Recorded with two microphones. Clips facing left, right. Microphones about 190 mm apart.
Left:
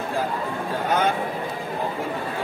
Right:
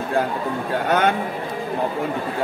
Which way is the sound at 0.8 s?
70° right (ahead or behind).